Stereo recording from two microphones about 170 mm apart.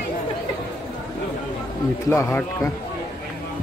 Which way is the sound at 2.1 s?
15° left (ahead or behind).